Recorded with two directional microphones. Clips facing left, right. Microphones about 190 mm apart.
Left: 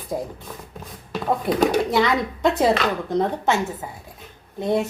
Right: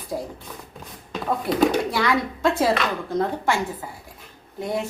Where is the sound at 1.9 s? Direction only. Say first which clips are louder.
Left 3 dB; 20° left (ahead or behind).